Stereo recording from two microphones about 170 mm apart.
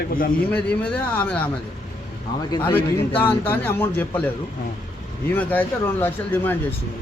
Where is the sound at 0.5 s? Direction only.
10° left (ahead or behind).